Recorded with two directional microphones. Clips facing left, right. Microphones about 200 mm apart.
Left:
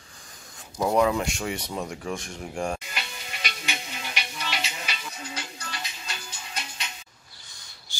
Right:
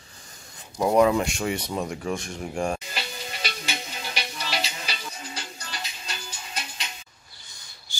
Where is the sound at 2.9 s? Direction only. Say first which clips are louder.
Right 3 dB; 35° right (ahead or behind).